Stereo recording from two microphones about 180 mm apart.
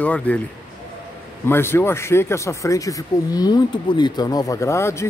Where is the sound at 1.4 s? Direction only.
15° left (ahead or behind).